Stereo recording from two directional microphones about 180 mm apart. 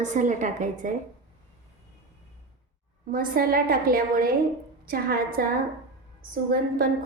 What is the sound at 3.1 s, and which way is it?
A woman's voice, 55° right (ahead or behind).